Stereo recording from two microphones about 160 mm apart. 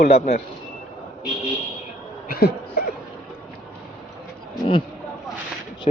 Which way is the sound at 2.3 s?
75° left (ahead or behind).